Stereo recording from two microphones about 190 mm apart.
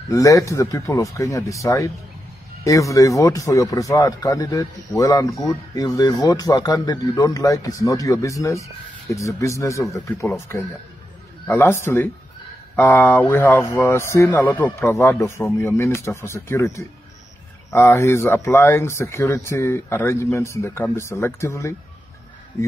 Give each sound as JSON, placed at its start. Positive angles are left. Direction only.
{"t": 0.1, "sound": "speech", "side_deg": 15}
{"t": 11.4, "sound": "speech", "side_deg": 15}